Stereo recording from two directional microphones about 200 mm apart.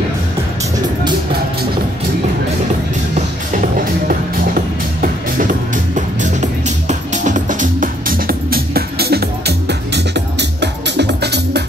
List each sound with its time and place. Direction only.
4.1 s music: 45° right (ahead or behind)